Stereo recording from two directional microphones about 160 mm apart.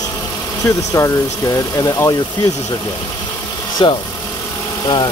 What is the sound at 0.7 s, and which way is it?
Speech, 20° left (ahead or behind).